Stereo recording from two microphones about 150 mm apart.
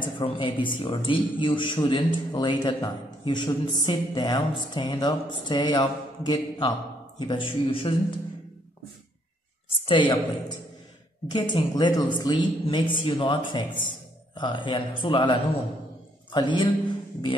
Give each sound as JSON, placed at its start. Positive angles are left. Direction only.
{"t": 0.0, "sound": "speech", "side_deg": 35}
{"t": 9.8, "sound": "a woman's voice", "side_deg": 35}
{"t": 11.2, "sound": "speech", "side_deg": 30}
{"t": 16.3, "sound": "a sound", "side_deg": 30}